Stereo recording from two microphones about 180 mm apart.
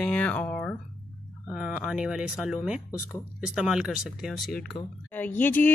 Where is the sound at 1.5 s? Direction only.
5° right (ahead or behind).